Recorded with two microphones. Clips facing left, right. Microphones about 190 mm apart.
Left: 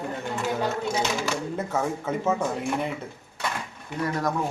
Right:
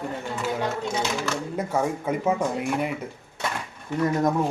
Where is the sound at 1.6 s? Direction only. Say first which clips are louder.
Right 2 dB; 10° right (ahead or behind).